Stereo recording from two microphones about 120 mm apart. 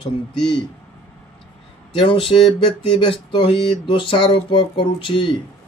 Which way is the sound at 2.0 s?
45° left (ahead or behind).